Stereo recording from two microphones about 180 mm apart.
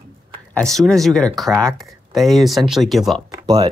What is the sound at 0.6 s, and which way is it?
Speech, 5° left (ahead or behind).